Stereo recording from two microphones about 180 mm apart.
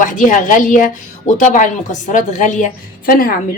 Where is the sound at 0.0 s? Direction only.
45° left (ahead or behind).